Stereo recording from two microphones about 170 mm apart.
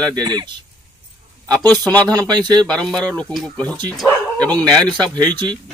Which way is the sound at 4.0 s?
5° left (ahead or behind).